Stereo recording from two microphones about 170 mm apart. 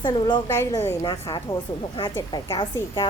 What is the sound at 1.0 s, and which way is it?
A woman's voice, 25° left (ahead or behind).